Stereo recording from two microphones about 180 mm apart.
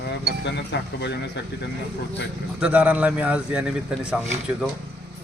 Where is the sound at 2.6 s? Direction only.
10° right (ahead or behind).